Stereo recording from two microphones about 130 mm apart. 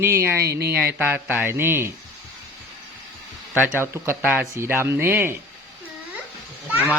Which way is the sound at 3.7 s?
20° right (ahead or behind).